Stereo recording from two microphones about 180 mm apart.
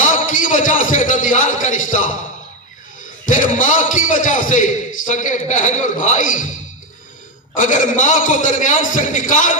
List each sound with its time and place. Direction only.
0.1 s a sound: 45° left (ahead or behind)
3.2 s a man's voice: 45° left (ahead or behind)
7.5 s a man's voice: 45° left (ahead or behind)